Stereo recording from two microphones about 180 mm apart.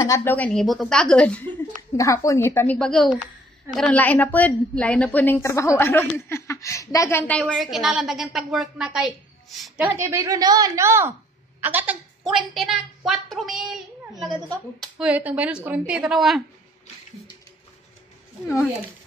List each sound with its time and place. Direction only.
0.0 s a woman's voice: 15° left (ahead or behind); by 16.4 s centre (ahead or behind)